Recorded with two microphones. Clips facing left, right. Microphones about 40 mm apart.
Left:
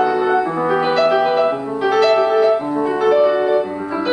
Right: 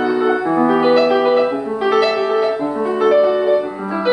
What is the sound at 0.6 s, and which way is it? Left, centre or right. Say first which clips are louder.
Music: right 4 dB; centre.